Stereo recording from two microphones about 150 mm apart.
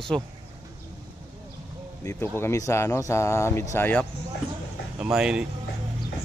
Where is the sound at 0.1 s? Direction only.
5° left (ahead or behind).